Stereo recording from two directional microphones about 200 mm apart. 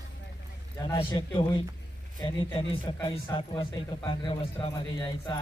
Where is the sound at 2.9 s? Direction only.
20° left (ahead or behind).